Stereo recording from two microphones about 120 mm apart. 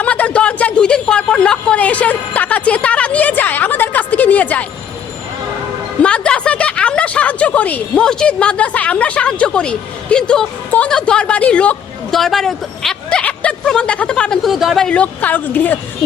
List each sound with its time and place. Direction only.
0.0 s speech: 10° left (ahead or behind)
6.0 s speech: 10° left (ahead or behind)